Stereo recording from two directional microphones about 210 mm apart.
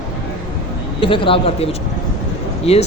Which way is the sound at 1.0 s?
25° left (ahead or behind).